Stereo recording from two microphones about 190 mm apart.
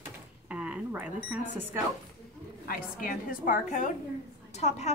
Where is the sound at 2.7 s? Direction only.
50° left (ahead or behind).